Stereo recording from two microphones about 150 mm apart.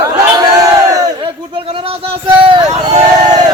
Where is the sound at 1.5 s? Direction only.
35° right (ahead or behind).